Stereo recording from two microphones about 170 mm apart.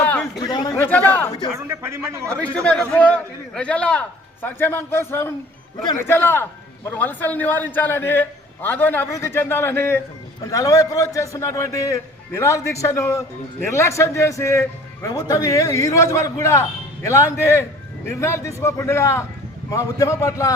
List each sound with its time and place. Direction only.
0.0 s chatter: 10° left (ahead or behind)
0.3 s chatter: 25° left (ahead or behind)
0.9 s chatter: 10° left (ahead or behind)
1.5 s a man's voice: 15° right (ahead or behind)
2.3 s a man's voice: 5° left (ahead or behind)